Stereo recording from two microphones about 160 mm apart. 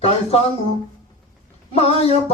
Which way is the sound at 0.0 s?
40° left (ahead or behind).